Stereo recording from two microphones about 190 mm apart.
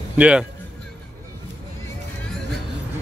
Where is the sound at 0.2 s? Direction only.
5° right (ahead or behind).